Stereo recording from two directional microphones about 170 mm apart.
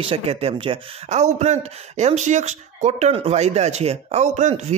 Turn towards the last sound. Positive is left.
turn(degrees=-40)  # may be behind; listen again after turning